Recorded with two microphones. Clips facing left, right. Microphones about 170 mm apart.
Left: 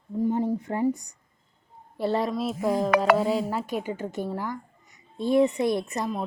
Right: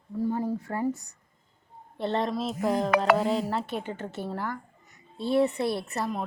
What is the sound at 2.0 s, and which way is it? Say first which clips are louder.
A woman's voice: left 2 dB; 5° left (ahead or behind).